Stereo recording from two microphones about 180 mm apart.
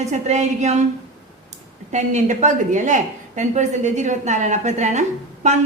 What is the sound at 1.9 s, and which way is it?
A woman's voice, 40° right (ahead or behind).